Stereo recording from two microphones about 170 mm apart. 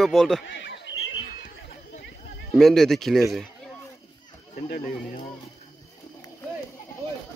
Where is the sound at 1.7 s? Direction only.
90° left.